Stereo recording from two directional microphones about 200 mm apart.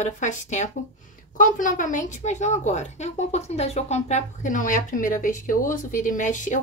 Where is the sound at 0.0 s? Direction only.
35° left (ahead or behind).